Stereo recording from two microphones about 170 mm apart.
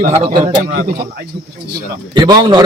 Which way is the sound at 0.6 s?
70° right (ahead or behind).